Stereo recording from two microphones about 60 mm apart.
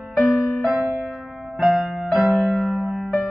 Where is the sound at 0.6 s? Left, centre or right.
Centre.